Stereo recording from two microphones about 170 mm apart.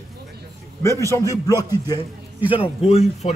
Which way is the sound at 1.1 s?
20° left (ahead or behind).